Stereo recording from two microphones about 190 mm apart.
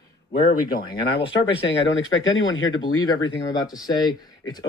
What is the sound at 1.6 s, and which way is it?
Speech, 90° left.